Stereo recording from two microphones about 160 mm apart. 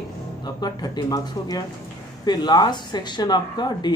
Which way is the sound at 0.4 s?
25° left (ahead or behind).